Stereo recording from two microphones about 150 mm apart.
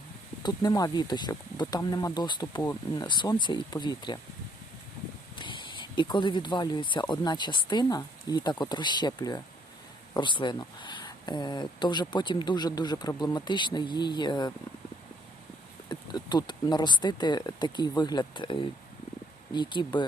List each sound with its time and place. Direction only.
0.4 s speech: 25° left (ahead or behind)
5.4 s speech: 35° left (ahead or behind)
15.9 s speech: 30° left (ahead or behind)